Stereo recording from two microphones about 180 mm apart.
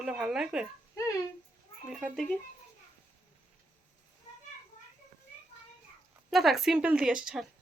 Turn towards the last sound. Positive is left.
turn(degrees=-5)  # may be behind; listen again after turning